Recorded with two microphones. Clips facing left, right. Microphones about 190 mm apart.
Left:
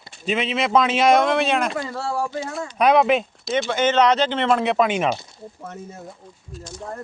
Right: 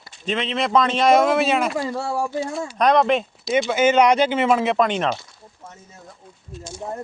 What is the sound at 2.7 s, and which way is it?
Speech, 5° left (ahead or behind).